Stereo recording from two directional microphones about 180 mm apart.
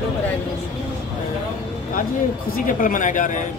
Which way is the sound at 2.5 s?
50° left (ahead or behind).